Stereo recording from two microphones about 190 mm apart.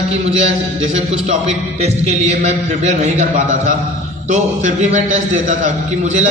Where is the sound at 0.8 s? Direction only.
35° right (ahead or behind).